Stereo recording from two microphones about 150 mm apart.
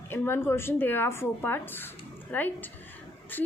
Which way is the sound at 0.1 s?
15° left (ahead or behind).